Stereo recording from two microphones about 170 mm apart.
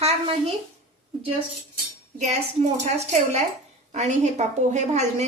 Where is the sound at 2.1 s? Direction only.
40° right (ahead or behind).